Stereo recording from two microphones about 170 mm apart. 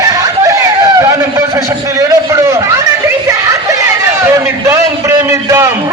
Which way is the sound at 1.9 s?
15° right (ahead or behind).